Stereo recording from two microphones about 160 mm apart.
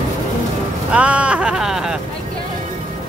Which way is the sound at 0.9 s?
5° right (ahead or behind).